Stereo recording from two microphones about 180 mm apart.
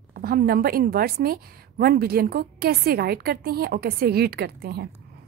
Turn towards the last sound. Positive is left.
turn(degrees=-60)  # may be behind; listen again after turning